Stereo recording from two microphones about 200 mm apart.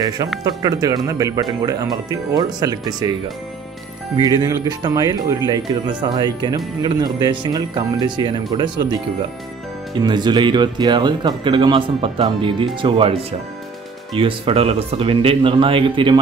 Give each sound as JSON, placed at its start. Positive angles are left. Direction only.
{"t": 0.4, "sound": "speech", "side_deg": -20}
{"t": 4.2, "sound": "speech", "side_deg": -20}
{"t": 14.1, "sound": "speech", "side_deg": -30}